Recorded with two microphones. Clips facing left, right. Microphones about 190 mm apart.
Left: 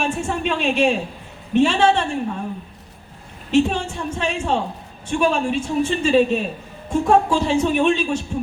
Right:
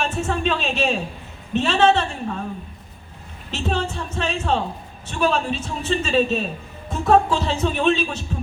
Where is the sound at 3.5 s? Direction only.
10° left (ahead or behind).